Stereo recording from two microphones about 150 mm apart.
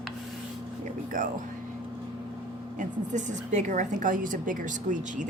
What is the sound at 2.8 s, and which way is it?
A woman's voice, 55° right (ahead or behind).